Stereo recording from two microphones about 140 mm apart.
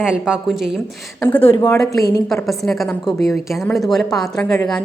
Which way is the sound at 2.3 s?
Centre (ahead or behind).